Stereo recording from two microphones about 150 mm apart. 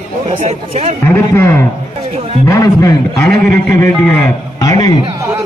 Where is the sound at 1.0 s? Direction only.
15° left (ahead or behind).